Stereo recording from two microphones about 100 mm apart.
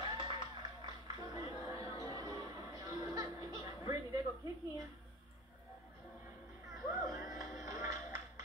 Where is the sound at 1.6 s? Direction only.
35° right (ahead or behind).